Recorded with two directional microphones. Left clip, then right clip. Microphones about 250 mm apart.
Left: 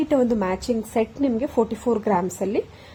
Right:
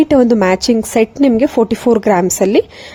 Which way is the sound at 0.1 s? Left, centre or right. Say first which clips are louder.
Right 10 dB; right.